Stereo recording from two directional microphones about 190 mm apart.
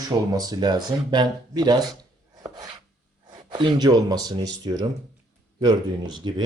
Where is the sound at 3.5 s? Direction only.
25° right (ahead or behind).